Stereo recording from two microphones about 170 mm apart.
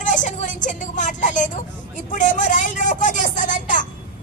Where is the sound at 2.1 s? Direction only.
50° left (ahead or behind).